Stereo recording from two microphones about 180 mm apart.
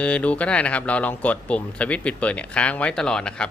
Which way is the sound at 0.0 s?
5° left (ahead or behind).